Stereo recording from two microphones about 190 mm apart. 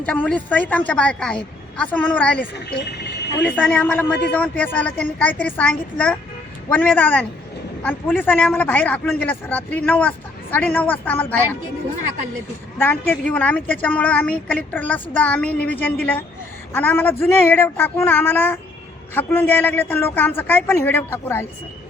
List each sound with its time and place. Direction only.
0.0 s a man's voice: 5° left (ahead or behind)
12.8 s a man's voice: 10° left (ahead or behind)